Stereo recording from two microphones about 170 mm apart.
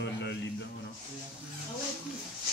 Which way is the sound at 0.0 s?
90° left.